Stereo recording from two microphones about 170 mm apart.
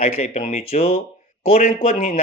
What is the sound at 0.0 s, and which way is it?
Speech, 40° left (ahead or behind).